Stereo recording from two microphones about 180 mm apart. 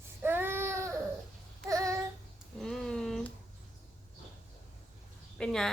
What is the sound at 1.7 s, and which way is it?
Child singing, 20° right (ahead or behind).